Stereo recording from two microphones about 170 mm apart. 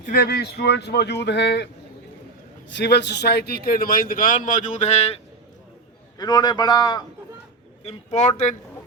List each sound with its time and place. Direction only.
0.0 s speech: 50° left (ahead or behind)
0.3 s a man's voice: 70° left (ahead or behind); by 5.1 s 40° left (ahead or behind)
6.1 s a man's voice: 25° left (ahead or behind)
7.9 s speech: 40° left (ahead or behind)